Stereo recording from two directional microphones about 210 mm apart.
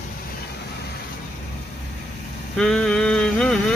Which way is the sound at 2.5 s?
5° left (ahead or behind).